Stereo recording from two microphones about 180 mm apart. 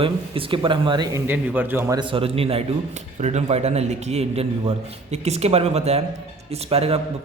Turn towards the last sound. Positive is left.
turn(degrees=-35)  # may be behind; listen again after turning